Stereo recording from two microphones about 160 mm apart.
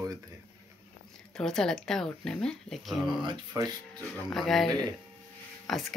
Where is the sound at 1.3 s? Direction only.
5° left (ahead or behind).